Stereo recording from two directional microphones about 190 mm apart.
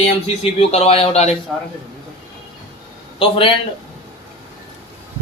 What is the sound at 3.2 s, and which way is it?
Speech, 30° left (ahead or behind).